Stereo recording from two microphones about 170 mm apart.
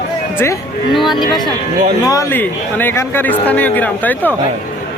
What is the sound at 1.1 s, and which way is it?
A man's voice, 25° left (ahead or behind).